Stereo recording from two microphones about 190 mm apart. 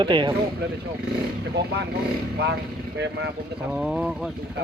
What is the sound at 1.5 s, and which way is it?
Speech, 60° right (ahead or behind).